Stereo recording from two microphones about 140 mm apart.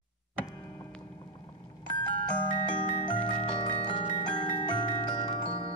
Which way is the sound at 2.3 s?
30° left (ahead or behind).